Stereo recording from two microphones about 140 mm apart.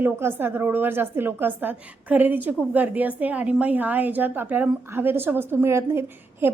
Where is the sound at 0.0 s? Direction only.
15° right (ahead or behind).